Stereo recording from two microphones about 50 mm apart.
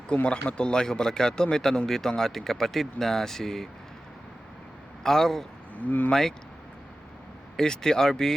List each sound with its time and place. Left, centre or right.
0.3 s speech: left
5.0 s speech: centre
5.7 s speech: left
6.1 s speech: centre
7.5 s speech: centre